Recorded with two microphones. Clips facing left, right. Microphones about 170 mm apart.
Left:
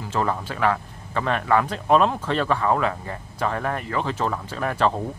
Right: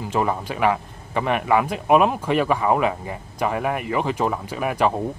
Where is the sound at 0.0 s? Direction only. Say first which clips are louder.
Right 2 dB; 15° right (ahead or behind).